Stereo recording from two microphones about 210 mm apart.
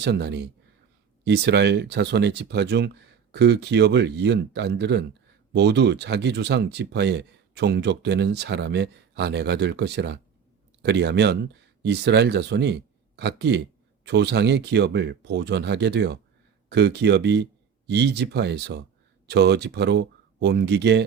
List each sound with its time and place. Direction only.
0.0 s speech: 55° right (ahead or behind)